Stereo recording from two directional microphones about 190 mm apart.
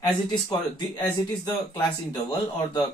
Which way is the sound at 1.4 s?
20° left (ahead or behind).